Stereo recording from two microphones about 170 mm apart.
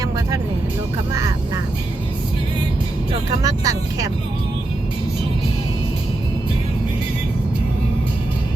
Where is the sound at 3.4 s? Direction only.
20° right (ahead or behind).